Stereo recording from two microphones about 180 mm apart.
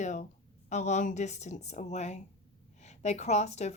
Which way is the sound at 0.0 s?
40° left (ahead or behind).